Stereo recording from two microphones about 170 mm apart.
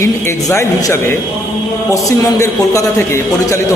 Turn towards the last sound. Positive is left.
turn(degrees=15)  # may be behind; listen again after turning